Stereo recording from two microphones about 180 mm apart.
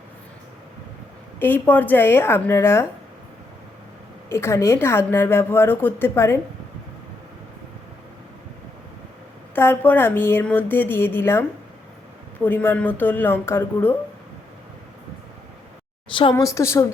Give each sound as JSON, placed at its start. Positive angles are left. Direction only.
{"t": 1.4, "sound": "a woman's voice", "side_deg": 10}
{"t": 4.3, "sound": "a woman's voice", "side_deg": 15}
{"t": 9.6, "sound": "a woman's voice", "side_deg": 10}
{"t": 16.3, "sound": "a woman's voice", "side_deg": 15}